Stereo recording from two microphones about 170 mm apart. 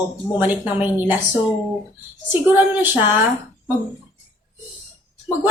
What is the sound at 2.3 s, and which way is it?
Speech, 10° right (ahead or behind).